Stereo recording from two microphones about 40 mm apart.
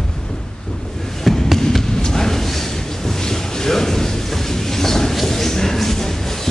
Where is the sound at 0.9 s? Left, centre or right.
Centre.